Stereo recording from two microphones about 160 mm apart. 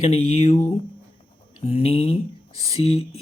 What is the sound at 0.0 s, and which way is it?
Speech, 40° left (ahead or behind).